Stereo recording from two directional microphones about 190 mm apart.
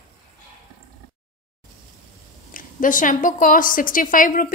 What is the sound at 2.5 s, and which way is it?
A woman's voice, 45° left (ahead or behind).